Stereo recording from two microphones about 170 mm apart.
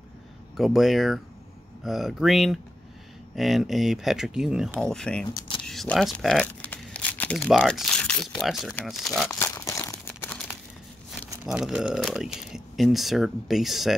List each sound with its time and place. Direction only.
0.6 s speech: centre (ahead or behind)
9.3 s crumpling: 20° left (ahead or behind)
11.4 s speech: centre (ahead or behind)